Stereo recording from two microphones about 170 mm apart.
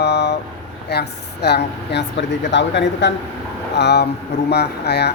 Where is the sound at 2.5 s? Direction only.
90° left.